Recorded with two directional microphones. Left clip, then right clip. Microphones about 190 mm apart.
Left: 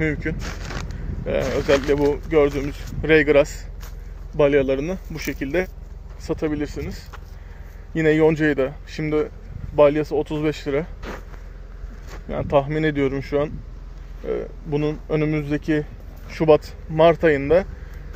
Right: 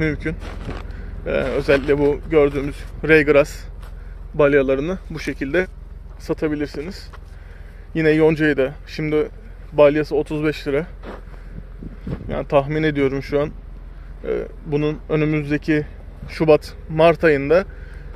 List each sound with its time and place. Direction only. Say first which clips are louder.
0.0 s speech: right 1 dB; 15° right (ahead or behind)
1.2 s a man's voice: right 2 dB; 15° right (ahead or behind)
11.0 s a sound: left 1 dB; 15° left (ahead or behind)
12.3 s a man's voice: right 2 dB; 15° right (ahead or behind)